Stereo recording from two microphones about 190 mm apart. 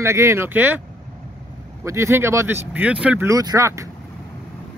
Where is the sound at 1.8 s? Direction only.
15° right (ahead or behind).